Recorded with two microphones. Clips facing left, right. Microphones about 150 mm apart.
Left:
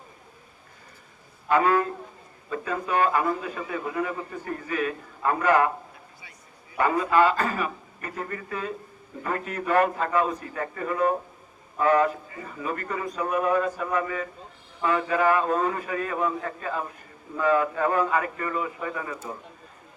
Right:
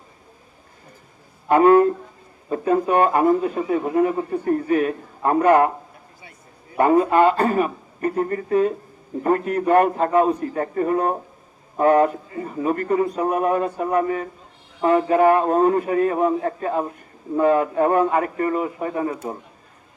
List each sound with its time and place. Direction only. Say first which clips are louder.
1.5 s a man's voice: right 9 dB; 50° right (ahead or behind)
6.7 s a man's voice: right 6 dB; 50° right (ahead or behind)